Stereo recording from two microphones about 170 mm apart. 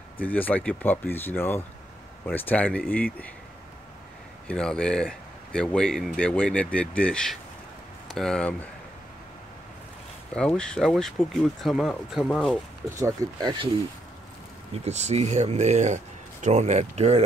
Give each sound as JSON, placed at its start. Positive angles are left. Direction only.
{"t": 0.2, "sound": "speech", "side_deg": 10}
{"t": 4.5, "sound": "speech", "side_deg": 5}
{"t": 10.3, "sound": "speech", "side_deg": 5}
{"t": 13.0, "sound": "speech", "side_deg": -20}
{"t": 14.7, "sound": "speech", "side_deg": -40}